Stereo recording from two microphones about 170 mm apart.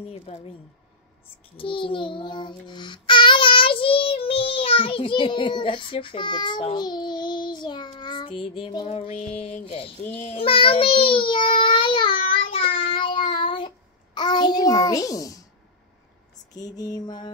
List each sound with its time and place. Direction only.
0.0 s speech: 40° left (ahead or behind)
1.6 s child singing: 30° left (ahead or behind)
16.5 s child singing: 20° left (ahead or behind)